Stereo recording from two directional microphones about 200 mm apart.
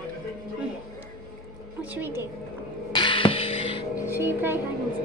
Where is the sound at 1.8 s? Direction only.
10° right (ahead or behind).